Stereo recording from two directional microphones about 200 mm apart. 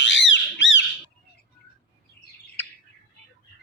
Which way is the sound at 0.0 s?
65° left (ahead or behind).